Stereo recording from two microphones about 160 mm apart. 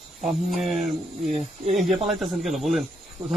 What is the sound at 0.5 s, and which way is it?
Speech, centre (ahead or behind).